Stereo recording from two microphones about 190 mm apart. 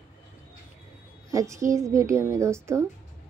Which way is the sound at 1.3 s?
15° right (ahead or behind).